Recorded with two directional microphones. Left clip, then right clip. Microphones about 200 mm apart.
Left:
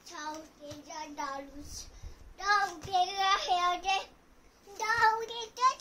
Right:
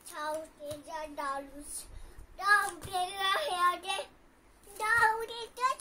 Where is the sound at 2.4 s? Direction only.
10° left (ahead or behind).